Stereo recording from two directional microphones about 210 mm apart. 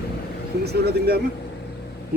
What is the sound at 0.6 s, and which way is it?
Speech, 50° right (ahead or behind).